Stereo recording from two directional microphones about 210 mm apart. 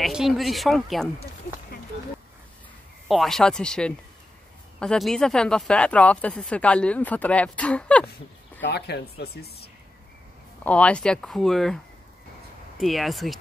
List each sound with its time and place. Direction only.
0.0 s speech: centre (ahead or behind)
3.1 s speech: centre (ahead or behind)
8.5 s speech: 50° left (ahead or behind)
10.6 s speech: 5° left (ahead or behind)